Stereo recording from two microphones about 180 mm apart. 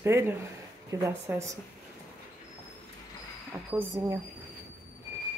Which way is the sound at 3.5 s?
15° right (ahead or behind).